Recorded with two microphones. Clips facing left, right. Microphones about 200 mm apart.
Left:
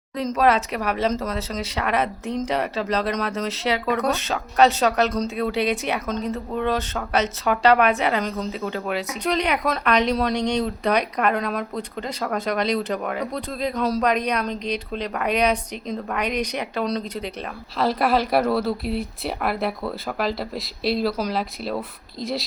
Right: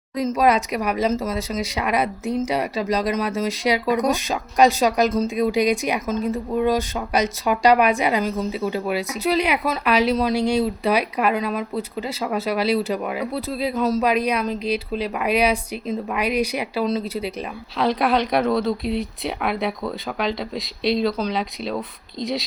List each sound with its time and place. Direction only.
0.2 s speech: 10° right (ahead or behind)